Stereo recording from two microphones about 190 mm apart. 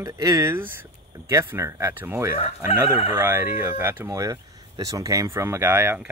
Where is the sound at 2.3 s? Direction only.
35° left (ahead or behind).